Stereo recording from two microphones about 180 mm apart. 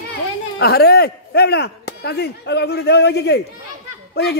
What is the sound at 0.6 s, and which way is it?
Speech, 60° left (ahead or behind).